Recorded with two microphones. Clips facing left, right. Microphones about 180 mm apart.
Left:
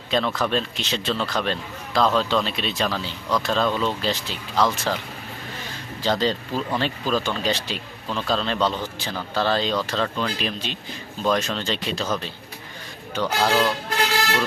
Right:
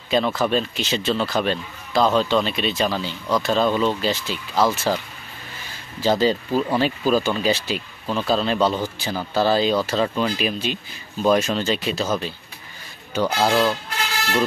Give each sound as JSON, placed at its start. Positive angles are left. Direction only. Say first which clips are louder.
{"t": 0.1, "sound": "a man's voice", "louder": "right 3 dB", "side_deg": -5}
{"t": 6.0, "sound": "speech", "louder": "right 4 dB", "side_deg": -5}
{"t": 13.5, "sound": "speech", "louder": "right 1 dB", "side_deg": -20}